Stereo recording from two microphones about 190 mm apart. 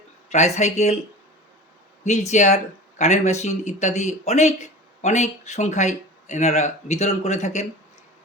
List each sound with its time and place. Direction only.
0.3 s speech: 35° left (ahead or behind)
2.0 s speech: 35° left (ahead or behind)